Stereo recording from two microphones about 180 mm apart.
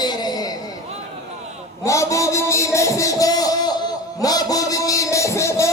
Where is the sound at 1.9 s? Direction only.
15° left (ahead or behind).